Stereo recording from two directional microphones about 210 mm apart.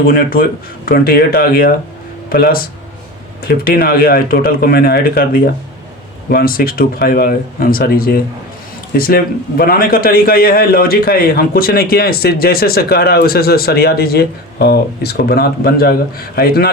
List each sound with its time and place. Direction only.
0.1 s a man's voice: 45° left (ahead or behind)